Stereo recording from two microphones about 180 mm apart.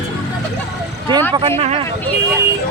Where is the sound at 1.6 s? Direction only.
35° right (ahead or behind).